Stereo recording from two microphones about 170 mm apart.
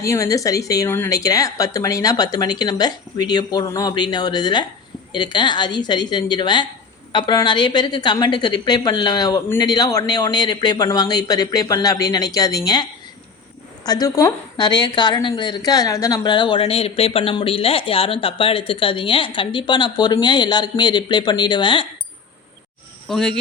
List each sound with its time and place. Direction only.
0.0 s a woman's voice: 20° left (ahead or behind)
23.0 s speech: centre (ahead or behind)